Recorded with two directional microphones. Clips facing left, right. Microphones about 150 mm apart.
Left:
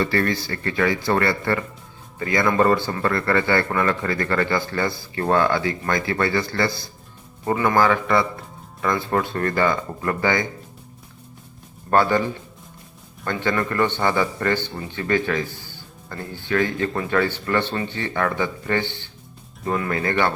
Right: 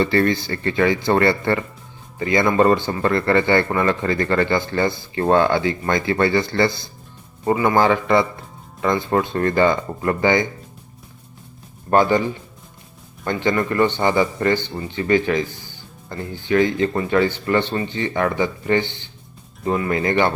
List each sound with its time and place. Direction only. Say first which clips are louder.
0.0 s a man's voice: right 4 dB; 25° right (ahead or behind)
7.8 s speech: right 1 dB; 25° right (ahead or behind)
11.9 s a man's voice: right 2 dB; 15° right (ahead or behind)
13.2 s a man's voice: right 3 dB; 15° right (ahead or behind)